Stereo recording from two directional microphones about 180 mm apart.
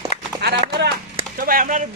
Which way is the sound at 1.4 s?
50° right (ahead or behind).